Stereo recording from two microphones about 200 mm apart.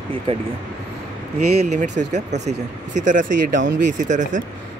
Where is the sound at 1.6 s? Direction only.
35° right (ahead or behind).